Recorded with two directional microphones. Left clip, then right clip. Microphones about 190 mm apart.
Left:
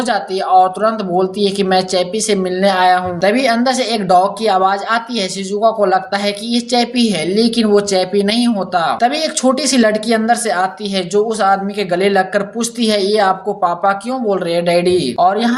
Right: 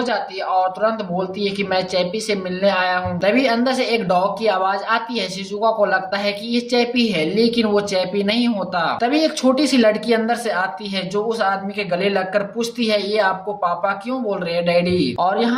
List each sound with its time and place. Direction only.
0.0 s speech: 25° left (ahead or behind)